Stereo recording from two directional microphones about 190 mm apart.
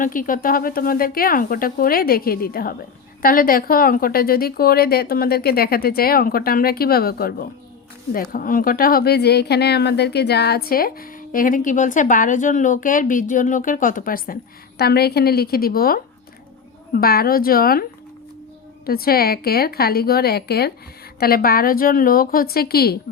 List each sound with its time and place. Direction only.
0.0 s a woman's voice: 45° left (ahead or behind)
18.9 s speech: 55° left (ahead or behind)